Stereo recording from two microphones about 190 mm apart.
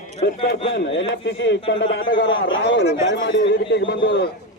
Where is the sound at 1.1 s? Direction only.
70° left (ahead or behind).